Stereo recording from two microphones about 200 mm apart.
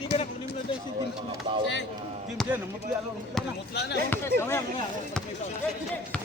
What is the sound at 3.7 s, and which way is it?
Speech, 55° left (ahead or behind).